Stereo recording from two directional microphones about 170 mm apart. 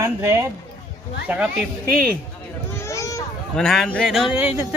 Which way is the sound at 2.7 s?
15° left (ahead or behind).